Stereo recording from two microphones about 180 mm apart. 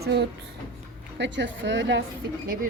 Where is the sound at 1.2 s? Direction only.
90° right.